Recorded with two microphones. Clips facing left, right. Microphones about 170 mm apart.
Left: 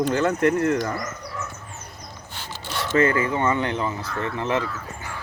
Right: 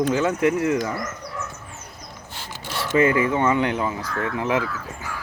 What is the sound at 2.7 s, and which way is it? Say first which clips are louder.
Speech: right 1 dB; 10° right (ahead or behind).